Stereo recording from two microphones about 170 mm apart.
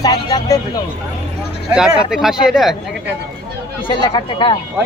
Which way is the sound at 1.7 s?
5° right (ahead or behind).